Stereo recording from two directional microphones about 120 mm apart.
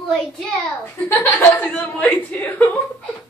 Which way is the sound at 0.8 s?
15° left (ahead or behind).